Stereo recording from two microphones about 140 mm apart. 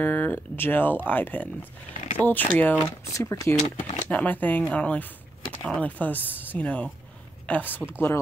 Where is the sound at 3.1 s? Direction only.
20° left (ahead or behind).